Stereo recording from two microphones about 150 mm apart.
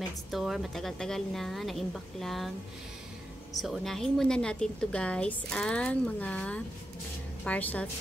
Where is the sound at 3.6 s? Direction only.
Centre (ahead or behind).